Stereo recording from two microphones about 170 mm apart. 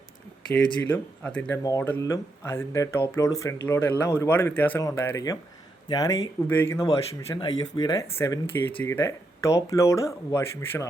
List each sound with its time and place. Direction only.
0.5 s speech: 10° left (ahead or behind)
7.3 s speech: 25° left (ahead or behind)